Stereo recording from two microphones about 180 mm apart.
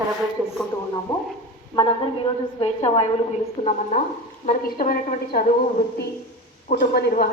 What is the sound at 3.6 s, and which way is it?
Speech, 25° left (ahead or behind).